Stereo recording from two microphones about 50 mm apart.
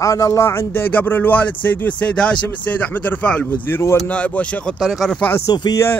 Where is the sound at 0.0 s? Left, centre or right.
Left.